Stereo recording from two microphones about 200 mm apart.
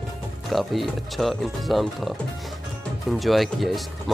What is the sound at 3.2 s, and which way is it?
Speech, centre (ahead or behind).